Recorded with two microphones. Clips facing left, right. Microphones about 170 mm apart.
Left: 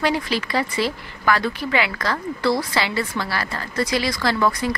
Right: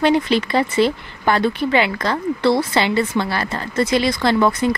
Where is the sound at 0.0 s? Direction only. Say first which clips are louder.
Right 6 dB; 25° right (ahead or behind).